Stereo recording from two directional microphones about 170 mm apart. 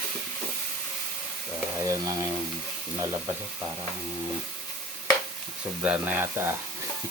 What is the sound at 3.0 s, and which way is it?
Speech, 15° right (ahead or behind).